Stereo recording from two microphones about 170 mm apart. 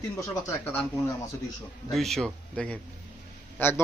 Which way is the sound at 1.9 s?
Centre (ahead or behind).